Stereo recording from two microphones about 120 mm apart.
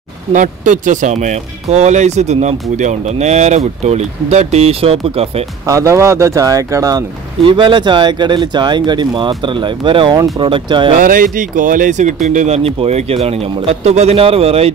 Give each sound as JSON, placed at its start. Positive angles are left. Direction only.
{"t": 0.3, "sound": "speech", "side_deg": -90}
{"t": 5.7, "sound": "speech", "side_deg": -25}
{"t": 7.4, "sound": "speech", "side_deg": -40}
{"t": 11.0, "sound": "speech", "side_deg": -90}